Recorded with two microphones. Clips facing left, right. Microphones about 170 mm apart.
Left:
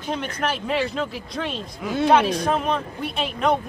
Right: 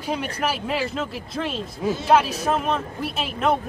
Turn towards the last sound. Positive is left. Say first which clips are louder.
# left 1 dB
turn(degrees=-5)  # may be behind; listen again after turning